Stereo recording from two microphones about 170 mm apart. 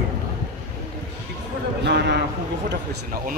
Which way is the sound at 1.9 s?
80° right.